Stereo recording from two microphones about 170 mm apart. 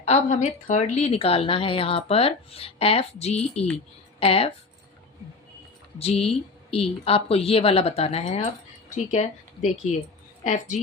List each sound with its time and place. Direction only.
0.0 s a woman's voice: 40° left (ahead or behind)
6.0 s a woman's voice: 35° left (ahead or behind)